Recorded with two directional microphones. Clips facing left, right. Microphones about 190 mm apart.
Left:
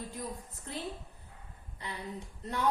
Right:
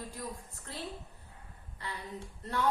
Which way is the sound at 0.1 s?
20° left (ahead or behind).